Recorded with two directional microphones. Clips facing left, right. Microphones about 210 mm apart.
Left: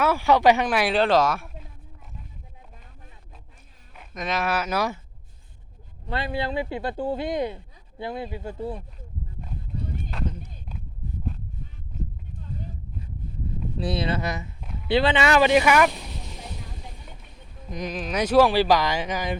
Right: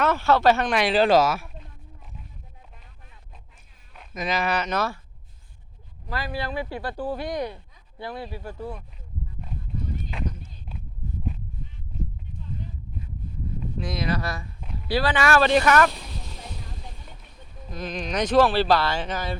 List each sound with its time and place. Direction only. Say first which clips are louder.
0.0 s speech: left 1 dB; 10° left (ahead or behind)
0.7 s speech: right 1 dB; centre (ahead or behind)
3.9 s speech: right 1 dB; centre (ahead or behind)
6.1 s speech: left 3 dB; 25° left (ahead or behind)
13.7 s speech: left 2 dB; 30° left (ahead or behind)
14.6 s a sound: right 1 dB; centre (ahead or behind)
14.8 s speech: left 2 dB; 20° left (ahead or behind)
17.7 s speech: left 1 dB; 15° left (ahead or behind)